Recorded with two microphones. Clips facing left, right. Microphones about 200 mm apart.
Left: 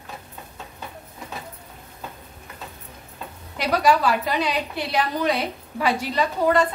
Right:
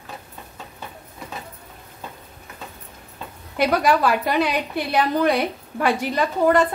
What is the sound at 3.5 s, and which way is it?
A woman's voice, 55° right (ahead or behind).